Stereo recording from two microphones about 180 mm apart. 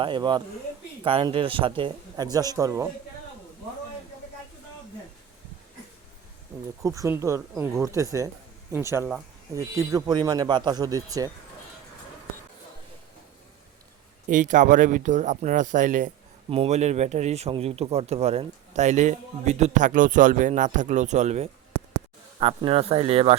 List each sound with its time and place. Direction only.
0.0 s a man's voice: 25° right (ahead or behind)
6.8 s a man's voice: 15° right (ahead or behind)
14.3 s speech: 45° right (ahead or behind)